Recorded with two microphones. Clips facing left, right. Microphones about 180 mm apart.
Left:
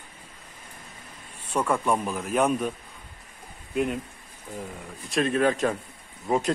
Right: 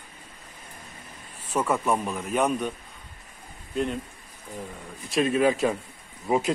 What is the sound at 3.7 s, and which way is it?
Speech, 5° left (ahead or behind).